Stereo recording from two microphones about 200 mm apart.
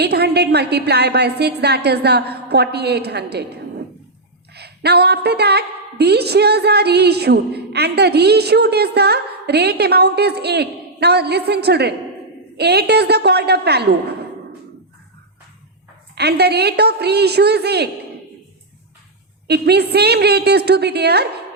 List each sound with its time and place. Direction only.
0.0 s a woman's voice: 55° right (ahead or behind)
16.1 s a woman's voice: 55° right (ahead or behind)
19.5 s a woman's voice: 55° right (ahead or behind)